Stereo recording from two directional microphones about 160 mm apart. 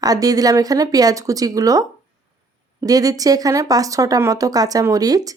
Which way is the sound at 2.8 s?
20° right (ahead or behind).